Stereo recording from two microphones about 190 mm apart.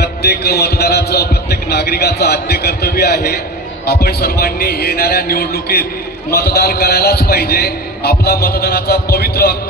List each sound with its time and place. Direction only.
0.0 s a man's voice: 55° left (ahead or behind)